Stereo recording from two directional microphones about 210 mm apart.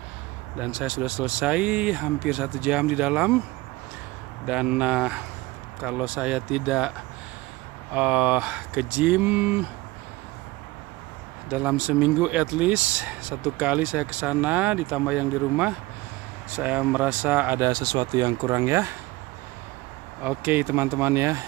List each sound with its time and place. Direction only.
0.6 s speech: 5° right (ahead or behind)
4.5 s speech: 5° right (ahead or behind)
7.9 s speech: 5° right (ahead or behind)
11.5 s speech: 5° right (ahead or behind)
20.2 s speech: 10° right (ahead or behind)